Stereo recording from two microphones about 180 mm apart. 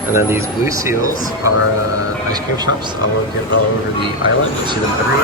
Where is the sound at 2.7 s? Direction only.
90° left.